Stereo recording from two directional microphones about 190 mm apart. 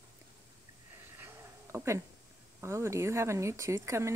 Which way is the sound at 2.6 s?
15° right (ahead or behind).